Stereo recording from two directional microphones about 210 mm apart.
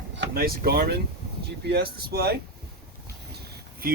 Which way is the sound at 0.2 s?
45° right (ahead or behind).